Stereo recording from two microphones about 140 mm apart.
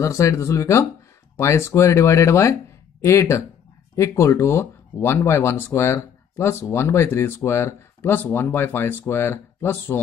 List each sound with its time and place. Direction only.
0.0 s speech: 20° left (ahead or behind)